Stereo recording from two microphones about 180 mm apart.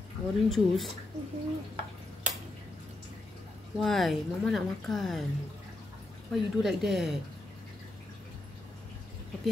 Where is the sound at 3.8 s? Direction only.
Centre (ahead or behind).